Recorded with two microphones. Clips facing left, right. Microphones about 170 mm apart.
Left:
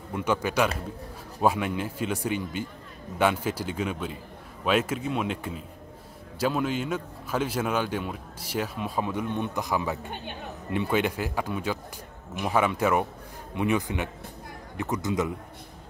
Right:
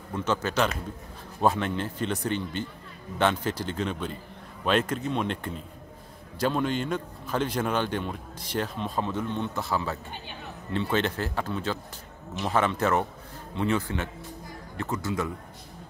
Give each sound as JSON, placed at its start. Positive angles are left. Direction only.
{"t": 0.1, "sound": "a man's voice", "side_deg": 10}